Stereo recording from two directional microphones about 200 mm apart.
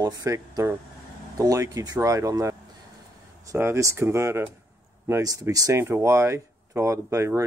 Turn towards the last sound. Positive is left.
turn(degrees=-15)  # may be behind; listen again after turning